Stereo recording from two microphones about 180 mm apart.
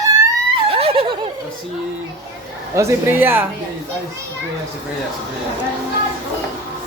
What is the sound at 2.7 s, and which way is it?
Speech, 15° right (ahead or behind).